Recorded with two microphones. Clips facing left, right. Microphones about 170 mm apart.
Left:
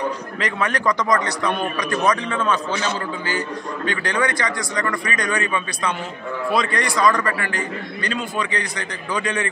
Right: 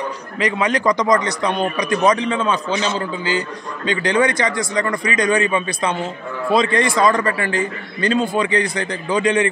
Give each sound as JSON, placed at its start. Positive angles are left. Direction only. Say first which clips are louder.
{"t": 0.4, "sound": "a man's voice", "louder": "right 5 dB", "side_deg": -15}